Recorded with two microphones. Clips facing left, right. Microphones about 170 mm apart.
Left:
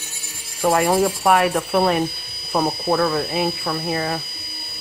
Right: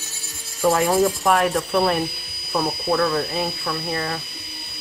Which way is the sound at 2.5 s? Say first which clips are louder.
Left 2 dB; 25° left (ahead or behind).